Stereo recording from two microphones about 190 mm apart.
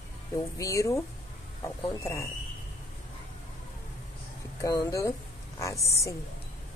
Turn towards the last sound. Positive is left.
turn(degrees=15)  # may be behind; listen again after turning